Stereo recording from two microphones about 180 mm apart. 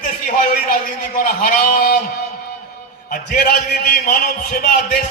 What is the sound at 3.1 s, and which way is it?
A man's voice, 65° left (ahead or behind).